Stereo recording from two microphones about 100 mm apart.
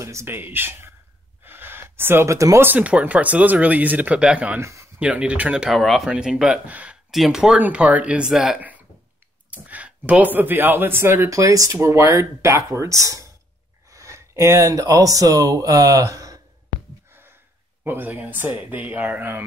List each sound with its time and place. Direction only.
0.0 s speech: 30° right (ahead or behind)
1.4 s gasp: 20° right (ahead or behind)
2.6 s speech: 15° right (ahead or behind)
4.6 s a sound: 30° right (ahead or behind)
5.0 s speech: 10° right (ahead or behind); by 16.3 s 35° right (ahead or behind)
17.8 s speech: 20° right (ahead or behind)